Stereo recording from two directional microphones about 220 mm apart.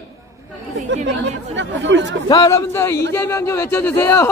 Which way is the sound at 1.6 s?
55° right (ahead or behind).